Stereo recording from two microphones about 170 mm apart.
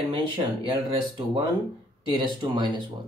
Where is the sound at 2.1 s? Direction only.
25° right (ahead or behind).